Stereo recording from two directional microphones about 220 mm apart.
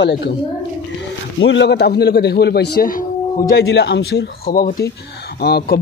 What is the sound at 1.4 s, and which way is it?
A man's voice, 55° left (ahead or behind).